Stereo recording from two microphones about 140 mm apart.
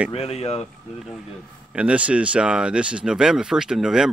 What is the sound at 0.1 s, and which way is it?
Speech, 45° left (ahead or behind).